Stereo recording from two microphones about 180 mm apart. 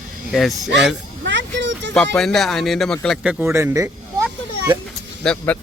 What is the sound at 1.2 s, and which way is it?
Speech, 90° right.